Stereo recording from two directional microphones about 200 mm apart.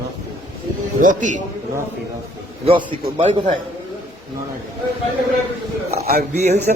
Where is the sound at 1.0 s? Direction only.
40° right (ahead or behind).